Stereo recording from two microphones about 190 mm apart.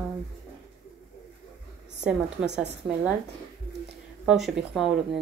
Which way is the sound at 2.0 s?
5° right (ahead or behind).